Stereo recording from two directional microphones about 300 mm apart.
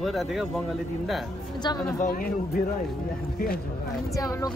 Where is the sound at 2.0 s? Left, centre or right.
Left.